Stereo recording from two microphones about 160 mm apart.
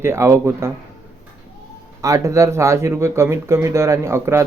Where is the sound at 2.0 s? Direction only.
20° right (ahead or behind).